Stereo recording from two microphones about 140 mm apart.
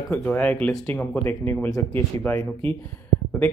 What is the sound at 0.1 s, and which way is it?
Speech, 10° left (ahead or behind).